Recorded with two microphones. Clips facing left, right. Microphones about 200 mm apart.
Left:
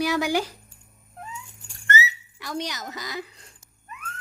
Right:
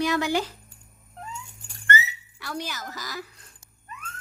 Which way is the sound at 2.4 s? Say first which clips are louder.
Left 2 dB; 15° left (ahead or behind).